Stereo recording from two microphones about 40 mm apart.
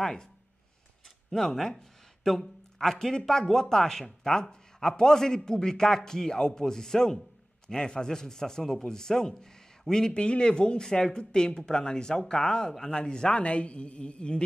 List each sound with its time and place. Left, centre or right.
0.0 s speech: centre
1.3 s speech: centre; by 14.4 s left